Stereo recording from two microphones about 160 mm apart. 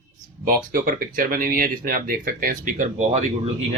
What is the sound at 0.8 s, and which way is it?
Speech, 60° right (ahead or behind).